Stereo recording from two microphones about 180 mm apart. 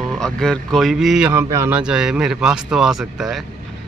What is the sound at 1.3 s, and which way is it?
Speech, 15° right (ahead or behind).